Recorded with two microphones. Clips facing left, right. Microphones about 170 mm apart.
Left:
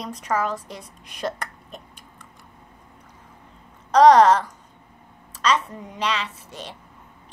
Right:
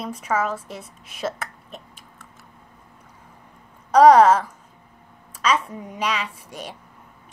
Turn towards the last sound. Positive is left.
turn(degrees=-10)  # may be behind; listen again after turning